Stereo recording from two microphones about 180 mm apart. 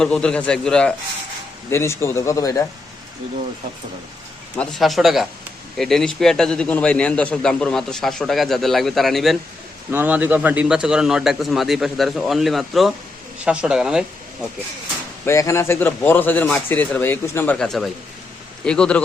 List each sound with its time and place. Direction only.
0.0 s a man's voice: 5° left (ahead or behind)
1.7 s a man's voice: 15° left (ahead or behind)
4.5 s a man's voice: 5° left (ahead or behind)
15.2 s a man's voice: 15° left (ahead or behind)